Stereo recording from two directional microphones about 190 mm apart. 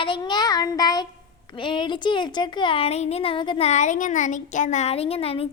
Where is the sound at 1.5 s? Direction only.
25° left (ahead or behind).